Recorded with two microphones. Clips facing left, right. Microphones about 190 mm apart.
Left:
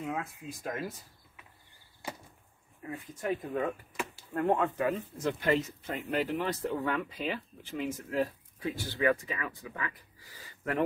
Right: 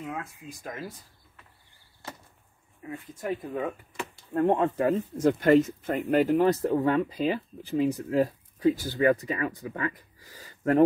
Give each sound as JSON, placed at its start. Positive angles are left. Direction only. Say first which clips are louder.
{"t": 0.0, "sound": "speech", "louder": "even", "side_deg": 0}
{"t": 2.9, "sound": "speech", "louder": "right 1 dB", "side_deg": 0}
{"t": 4.3, "sound": "speech", "louder": "right 5 dB", "side_deg": -20}
{"t": 4.7, "sound": "speech", "louder": "right 6 dB", "side_deg": -40}